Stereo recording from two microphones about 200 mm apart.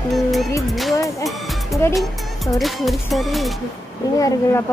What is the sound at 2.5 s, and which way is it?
Speech, centre (ahead or behind).